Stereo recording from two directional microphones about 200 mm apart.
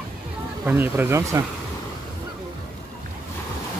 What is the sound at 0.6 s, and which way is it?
Speech, 10° right (ahead or behind).